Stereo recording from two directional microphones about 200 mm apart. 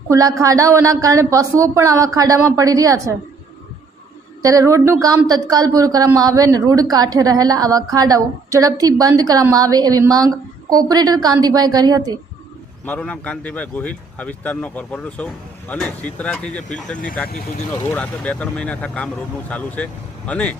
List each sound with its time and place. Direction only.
0.1 s speech: 15° right (ahead or behind)
4.4 s a woman's voice: 15° right (ahead or behind)
12.8 s speech: 10° left (ahead or behind)
17.8 s speech: 5° left (ahead or behind)